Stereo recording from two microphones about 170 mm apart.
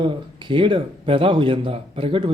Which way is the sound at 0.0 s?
30° right (ahead or behind).